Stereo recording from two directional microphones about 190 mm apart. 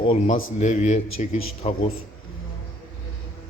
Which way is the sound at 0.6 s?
40° left (ahead or behind).